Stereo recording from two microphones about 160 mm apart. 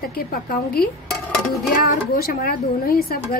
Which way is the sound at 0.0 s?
70° left (ahead or behind).